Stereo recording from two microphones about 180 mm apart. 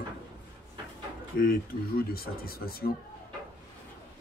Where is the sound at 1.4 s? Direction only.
55° left (ahead or behind).